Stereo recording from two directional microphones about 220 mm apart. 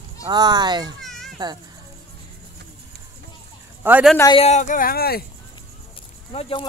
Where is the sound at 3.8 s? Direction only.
5° right (ahead or behind).